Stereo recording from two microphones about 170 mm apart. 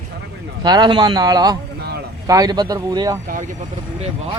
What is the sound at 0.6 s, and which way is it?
Speech, 25° right (ahead or behind).